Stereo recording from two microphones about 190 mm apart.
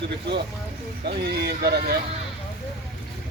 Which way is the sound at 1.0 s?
60° right (ahead or behind).